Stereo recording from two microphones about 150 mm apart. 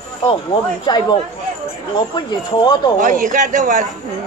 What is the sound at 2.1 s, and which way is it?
Speech, 30° left (ahead or behind).